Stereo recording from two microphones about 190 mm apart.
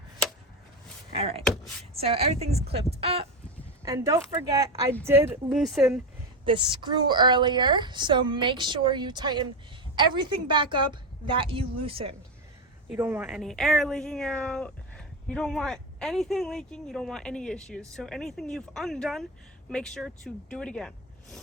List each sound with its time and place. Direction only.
1.1 s speech: 30° right (ahead or behind)
3.8 s speech: 20° right (ahead or behind)
5.5 s speech: centre (ahead or behind)
6.4 s a woman's voice: 25° right (ahead or behind)
13.0 s speech: 10° right (ahead or behind)